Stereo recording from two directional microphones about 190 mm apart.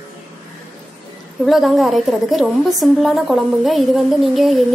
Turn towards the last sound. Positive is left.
turn(degrees=0)  # may be behind; listen again after turning